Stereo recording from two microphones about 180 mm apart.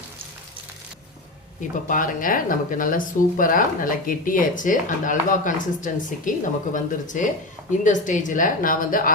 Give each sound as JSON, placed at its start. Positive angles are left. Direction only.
{"t": 1.9, "sound": "speech", "side_deg": 50}